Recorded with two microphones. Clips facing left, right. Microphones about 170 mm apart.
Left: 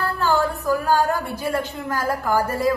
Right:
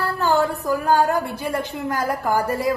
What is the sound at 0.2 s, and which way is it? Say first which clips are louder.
A woman's voice: right 2 dB; 20° right (ahead or behind).